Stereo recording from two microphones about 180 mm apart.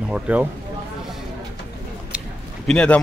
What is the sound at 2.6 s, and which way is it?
Speech, 5° left (ahead or behind).